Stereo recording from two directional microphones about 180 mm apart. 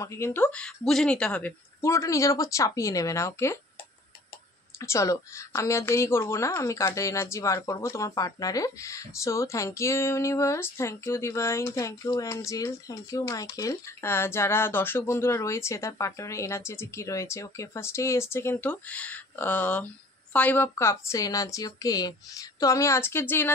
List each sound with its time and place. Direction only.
0.0 s a woman's voice: 15° left (ahead or behind)
4.7 s a woman's voice: 15° left (ahead or behind)